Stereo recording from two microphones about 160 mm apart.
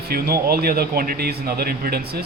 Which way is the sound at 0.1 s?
70° right (ahead or behind).